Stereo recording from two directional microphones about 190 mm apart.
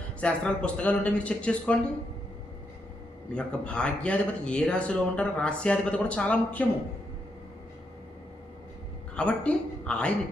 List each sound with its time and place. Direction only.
0.2 s speech: 5° left (ahead or behind)
3.3 s speech: 5° left (ahead or behind)
9.1 s speech: 5° left (ahead or behind)